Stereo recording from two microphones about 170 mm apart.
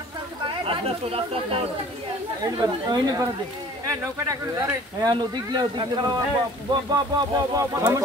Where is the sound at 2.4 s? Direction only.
20° right (ahead or behind).